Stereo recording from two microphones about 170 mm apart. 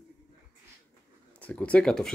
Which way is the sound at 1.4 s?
10° left (ahead or behind).